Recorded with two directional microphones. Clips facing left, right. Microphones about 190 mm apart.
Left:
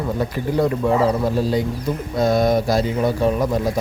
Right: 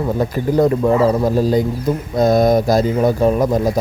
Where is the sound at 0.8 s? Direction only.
45° right (ahead or behind).